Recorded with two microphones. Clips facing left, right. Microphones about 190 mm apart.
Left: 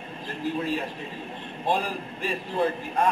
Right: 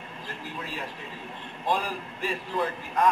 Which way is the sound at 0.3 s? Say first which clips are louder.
Left 11 dB; 25° left (ahead or behind).